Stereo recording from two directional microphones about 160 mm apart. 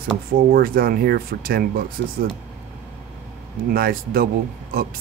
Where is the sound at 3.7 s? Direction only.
65° right (ahead or behind).